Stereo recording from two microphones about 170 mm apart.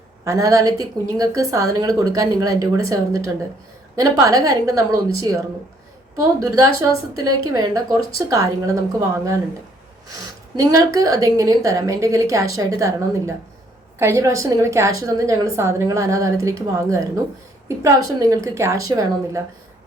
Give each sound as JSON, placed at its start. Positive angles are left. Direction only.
{"t": 0.3, "sound": "a woman's voice", "side_deg": -20}
{"t": 10.6, "sound": "a woman's voice", "side_deg": -20}